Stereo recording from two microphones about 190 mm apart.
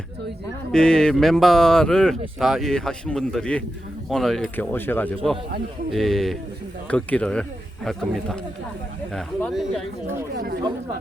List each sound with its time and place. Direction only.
0.7 s speech: 5° left (ahead or behind)
9.1 s speech: centre (ahead or behind)
10.3 s speech: 60° right (ahead or behind)